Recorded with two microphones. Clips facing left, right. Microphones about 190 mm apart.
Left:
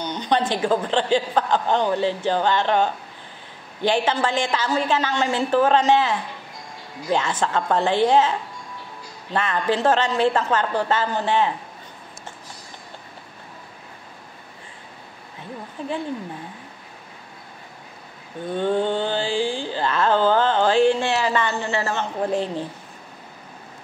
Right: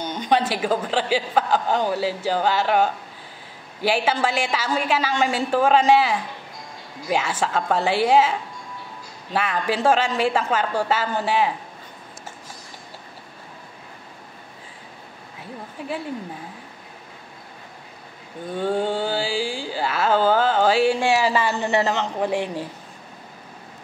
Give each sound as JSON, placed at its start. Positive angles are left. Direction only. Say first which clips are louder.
{"t": 0.2, "sound": "mantra", "louder": "even", "side_deg": -10}
{"t": 18.6, "sound": "mantra", "louder": "left 1 dB", "side_deg": -10}
{"t": 21.9, "sound": "speech", "louder": "even", "side_deg": -75}
{"t": 22.4, "sound": "mantra", "louder": "left 1 dB", "side_deg": -10}